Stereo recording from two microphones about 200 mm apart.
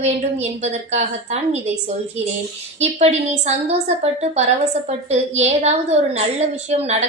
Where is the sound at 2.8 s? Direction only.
35° right (ahead or behind).